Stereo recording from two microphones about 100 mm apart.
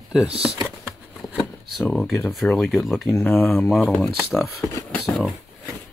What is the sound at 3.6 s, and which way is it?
Speech, centre (ahead or behind).